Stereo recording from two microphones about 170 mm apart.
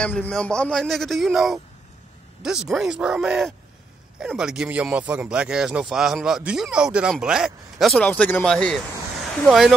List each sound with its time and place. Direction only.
0.0 s speech: 5° left (ahead or behind)